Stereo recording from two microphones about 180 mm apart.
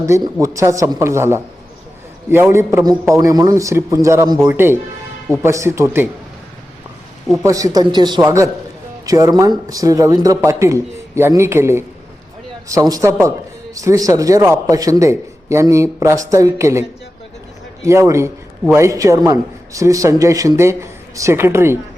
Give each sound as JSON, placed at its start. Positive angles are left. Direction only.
{"t": 0.0, "sound": "a man's voice", "side_deg": -15}
{"t": 7.4, "sound": "a man's voice", "side_deg": -20}
{"t": 17.8, "sound": "a man's voice", "side_deg": -15}